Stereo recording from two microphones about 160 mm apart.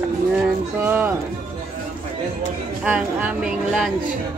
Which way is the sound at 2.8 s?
10° right (ahead or behind).